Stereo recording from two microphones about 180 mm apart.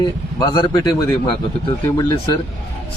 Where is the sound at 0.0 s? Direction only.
25° left (ahead or behind).